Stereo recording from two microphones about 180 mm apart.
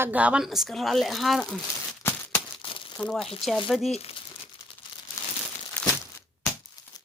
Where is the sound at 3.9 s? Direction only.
35° left (ahead or behind).